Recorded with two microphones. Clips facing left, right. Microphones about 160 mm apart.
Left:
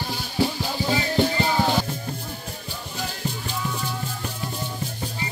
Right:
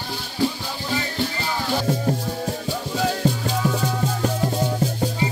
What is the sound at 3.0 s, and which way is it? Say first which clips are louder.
Music: right 9 dB; 85° right.